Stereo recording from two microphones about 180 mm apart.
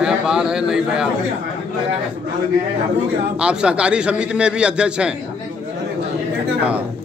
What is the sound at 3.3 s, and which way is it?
A man's voice, 5° right (ahead or behind).